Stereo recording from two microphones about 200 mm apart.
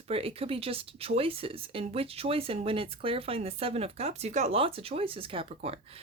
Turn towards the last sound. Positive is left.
turn(degrees=-25)  # may be behind; listen again after turning